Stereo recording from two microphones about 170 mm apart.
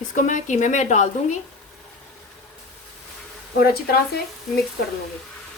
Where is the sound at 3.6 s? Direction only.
65° left (ahead or behind).